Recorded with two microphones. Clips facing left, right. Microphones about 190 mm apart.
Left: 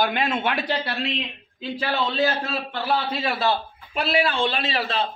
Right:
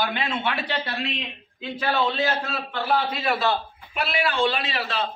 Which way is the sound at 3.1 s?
30° left (ahead or behind).